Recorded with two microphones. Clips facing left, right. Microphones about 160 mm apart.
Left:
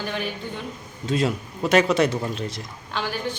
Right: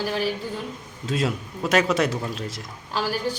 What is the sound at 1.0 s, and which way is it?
Speech, centre (ahead or behind).